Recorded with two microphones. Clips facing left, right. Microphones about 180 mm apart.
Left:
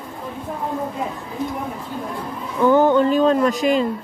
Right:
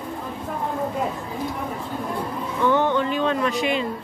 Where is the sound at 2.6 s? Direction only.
40° left (ahead or behind).